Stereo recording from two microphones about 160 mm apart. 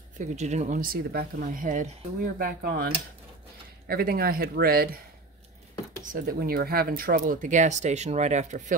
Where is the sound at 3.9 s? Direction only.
70° right (ahead or behind).